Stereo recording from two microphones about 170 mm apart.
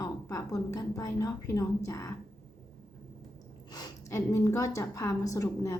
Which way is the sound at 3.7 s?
20° left (ahead or behind).